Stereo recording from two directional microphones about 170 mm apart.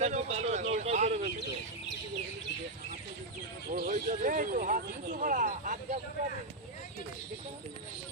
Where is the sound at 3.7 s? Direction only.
50° right (ahead or behind).